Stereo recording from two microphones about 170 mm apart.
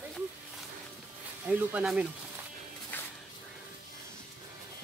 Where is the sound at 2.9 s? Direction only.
10° left (ahead or behind).